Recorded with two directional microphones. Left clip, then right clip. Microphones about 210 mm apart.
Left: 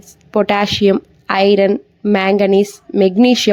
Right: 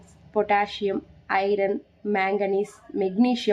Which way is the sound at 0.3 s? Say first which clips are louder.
Left 8 dB; 45° left (ahead or behind).